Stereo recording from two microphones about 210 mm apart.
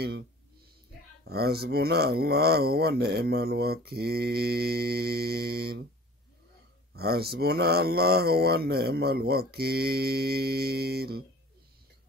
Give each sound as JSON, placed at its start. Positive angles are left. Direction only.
{"t": 1.2, "sound": "speech", "side_deg": -50}
{"t": 6.9, "sound": "speech", "side_deg": -50}